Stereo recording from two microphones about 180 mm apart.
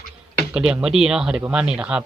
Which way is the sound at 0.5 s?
5° right (ahead or behind).